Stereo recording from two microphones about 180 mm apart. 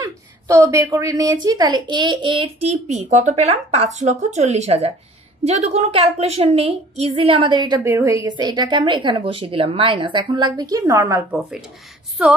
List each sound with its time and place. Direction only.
0.0 s a woman's voice: 15° right (ahead or behind)